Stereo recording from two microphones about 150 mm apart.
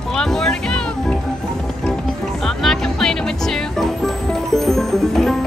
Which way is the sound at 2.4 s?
Centre (ahead or behind).